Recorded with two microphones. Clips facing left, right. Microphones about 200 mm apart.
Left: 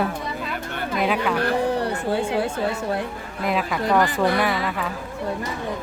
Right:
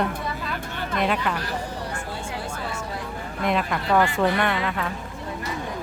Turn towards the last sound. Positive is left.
turn(degrees=5)  # may be behind; listen again after turning